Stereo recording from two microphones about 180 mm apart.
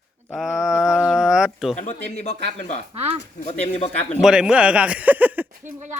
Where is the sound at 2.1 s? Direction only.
35° left (ahead or behind).